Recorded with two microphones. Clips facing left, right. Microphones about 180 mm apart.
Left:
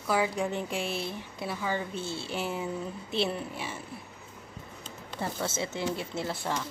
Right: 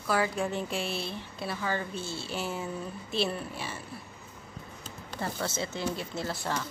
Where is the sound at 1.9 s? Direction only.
55° left (ahead or behind).